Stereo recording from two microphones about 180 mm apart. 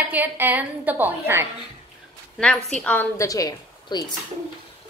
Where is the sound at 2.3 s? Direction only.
Centre (ahead or behind).